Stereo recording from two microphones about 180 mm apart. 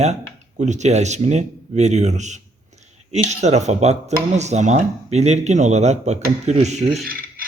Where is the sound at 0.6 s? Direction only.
40° right (ahead or behind).